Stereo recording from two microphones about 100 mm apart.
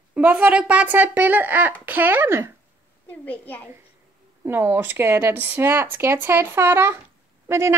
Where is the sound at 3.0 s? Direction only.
15° left (ahead or behind).